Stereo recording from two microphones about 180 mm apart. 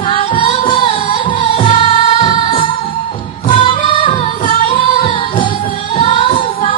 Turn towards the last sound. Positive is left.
turn(degrees=30)  # may be behind; listen again after turning